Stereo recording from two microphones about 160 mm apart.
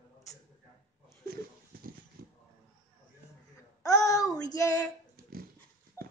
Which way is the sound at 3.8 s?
20° left (ahead or behind).